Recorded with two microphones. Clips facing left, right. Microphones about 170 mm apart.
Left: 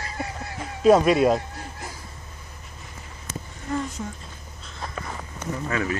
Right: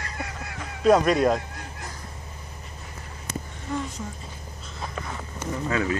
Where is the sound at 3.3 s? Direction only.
60° right (ahead or behind).